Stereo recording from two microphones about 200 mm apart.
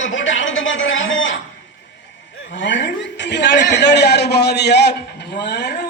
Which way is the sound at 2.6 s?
65° left (ahead or behind).